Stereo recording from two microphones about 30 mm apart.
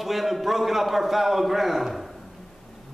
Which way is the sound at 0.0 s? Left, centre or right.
Centre.